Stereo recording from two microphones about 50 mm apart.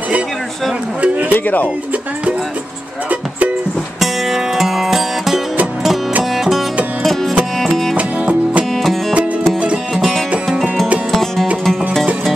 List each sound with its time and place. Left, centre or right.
1.3 s speech: left
3.1 s music: right
4.0 s music: centre
7.6 s music: centre
7.9 s music: right
9.9 s music: centre
10.3 s music: right
11.1 s music: centre